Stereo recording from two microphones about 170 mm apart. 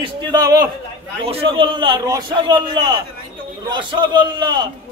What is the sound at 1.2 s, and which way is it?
A man's voice, 35° right (ahead or behind).